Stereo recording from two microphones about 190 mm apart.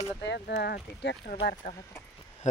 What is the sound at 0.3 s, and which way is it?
Speech, 60° left (ahead or behind).